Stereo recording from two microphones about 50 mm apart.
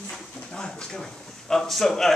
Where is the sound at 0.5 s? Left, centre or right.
Centre.